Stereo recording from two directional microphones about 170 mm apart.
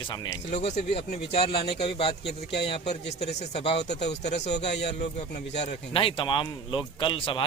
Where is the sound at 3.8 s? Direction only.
80° left.